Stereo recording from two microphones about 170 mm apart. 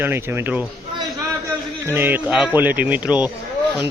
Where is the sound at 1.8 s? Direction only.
10° right (ahead or behind).